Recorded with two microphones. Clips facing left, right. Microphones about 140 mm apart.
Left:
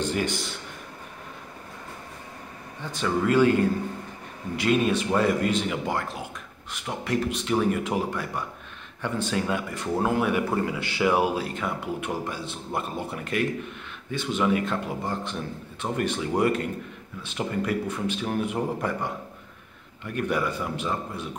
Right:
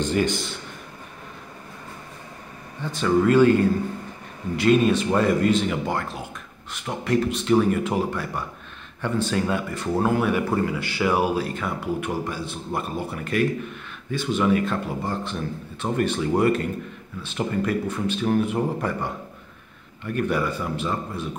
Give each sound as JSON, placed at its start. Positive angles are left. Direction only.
{"t": 0.0, "sound": "a man's voice", "side_deg": 10}
{"t": 2.9, "sound": "a man's voice", "side_deg": 10}
{"t": 4.6, "sound": "a man's voice", "side_deg": 10}
{"t": 20.2, "sound": "a man's voice", "side_deg": 15}